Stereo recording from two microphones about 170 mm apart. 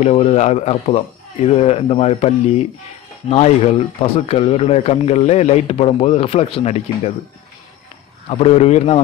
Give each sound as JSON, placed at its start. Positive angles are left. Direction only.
{"t": 0.0, "sound": "speech", "side_deg": 35}
{"t": 8.3, "sound": "speech", "side_deg": 40}